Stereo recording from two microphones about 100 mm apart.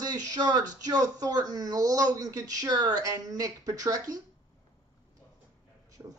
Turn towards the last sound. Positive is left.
turn(degrees=-20)  # may be behind; listen again after turning